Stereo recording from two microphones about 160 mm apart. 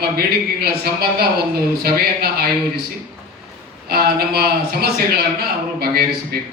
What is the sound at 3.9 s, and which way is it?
A man's voice, 75° right (ahead or behind).